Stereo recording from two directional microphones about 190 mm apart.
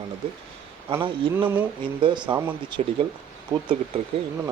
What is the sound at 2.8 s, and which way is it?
Speech, 35° right (ahead or behind).